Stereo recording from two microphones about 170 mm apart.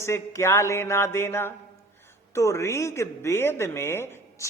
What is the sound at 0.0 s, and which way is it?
Speech, 15° left (ahead or behind).